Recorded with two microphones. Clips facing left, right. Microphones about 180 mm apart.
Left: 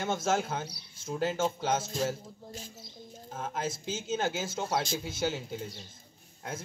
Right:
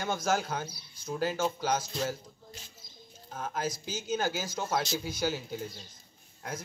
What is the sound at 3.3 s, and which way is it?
Speech, 25° left (ahead or behind).